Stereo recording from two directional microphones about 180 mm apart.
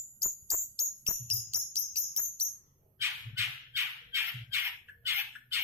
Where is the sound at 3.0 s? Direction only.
15° right (ahead or behind).